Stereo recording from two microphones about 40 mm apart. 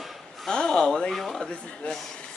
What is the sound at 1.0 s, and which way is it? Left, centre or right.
Brass instrument, centre.